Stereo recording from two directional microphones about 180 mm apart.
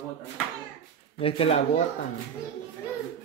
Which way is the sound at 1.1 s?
35° left (ahead or behind).